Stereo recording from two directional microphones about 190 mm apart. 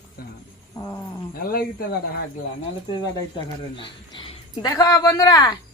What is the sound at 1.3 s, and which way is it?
Speech, 50° left (ahead or behind).